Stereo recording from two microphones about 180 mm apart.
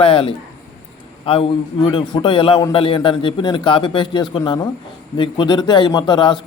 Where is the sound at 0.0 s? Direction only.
30° left (ahead or behind).